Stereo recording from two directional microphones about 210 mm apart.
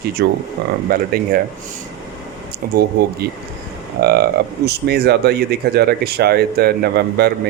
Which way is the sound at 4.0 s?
45° right (ahead or behind).